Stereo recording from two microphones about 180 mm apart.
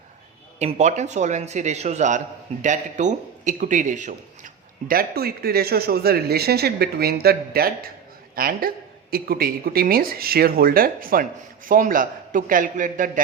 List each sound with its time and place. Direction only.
0.6 s a man's voice: 40° right (ahead or behind)